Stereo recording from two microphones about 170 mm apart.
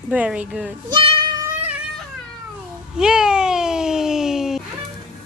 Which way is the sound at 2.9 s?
5° right (ahead or behind).